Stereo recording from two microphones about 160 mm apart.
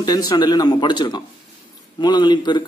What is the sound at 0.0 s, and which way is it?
A man's voice, 25° left (ahead or behind).